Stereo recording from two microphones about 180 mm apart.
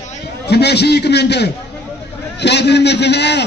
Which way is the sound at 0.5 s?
65° left (ahead or behind).